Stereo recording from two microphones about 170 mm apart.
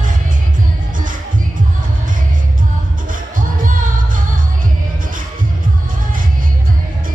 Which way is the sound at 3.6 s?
50° right (ahead or behind).